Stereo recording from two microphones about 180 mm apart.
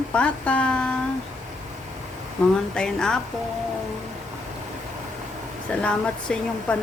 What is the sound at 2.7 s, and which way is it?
Speech, 5° left (ahead or behind).